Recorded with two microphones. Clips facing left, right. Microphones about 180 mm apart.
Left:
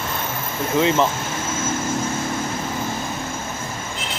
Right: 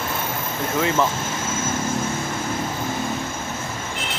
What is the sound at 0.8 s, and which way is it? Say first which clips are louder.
Speech: left 3 dB; 20° left (ahead or behind).